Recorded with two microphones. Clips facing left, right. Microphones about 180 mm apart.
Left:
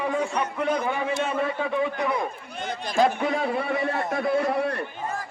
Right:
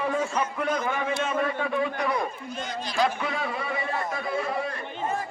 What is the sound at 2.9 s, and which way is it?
A man's voice, 45° left (ahead or behind).